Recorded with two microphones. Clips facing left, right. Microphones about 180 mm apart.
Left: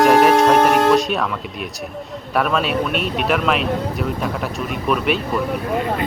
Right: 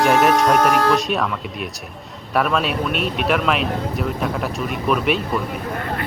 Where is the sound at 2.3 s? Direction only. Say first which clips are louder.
Left 1 dB; centre (ahead or behind).